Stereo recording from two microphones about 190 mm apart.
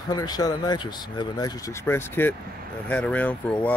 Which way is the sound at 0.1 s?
20° left (ahead or behind).